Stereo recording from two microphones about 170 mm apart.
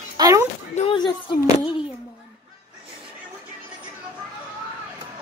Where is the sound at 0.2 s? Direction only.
20° right (ahead or behind).